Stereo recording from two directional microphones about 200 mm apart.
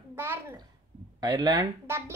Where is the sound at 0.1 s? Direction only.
10° right (ahead or behind).